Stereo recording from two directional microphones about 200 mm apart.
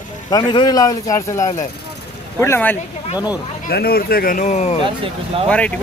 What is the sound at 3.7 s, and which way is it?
Speech, 50° left (ahead or behind).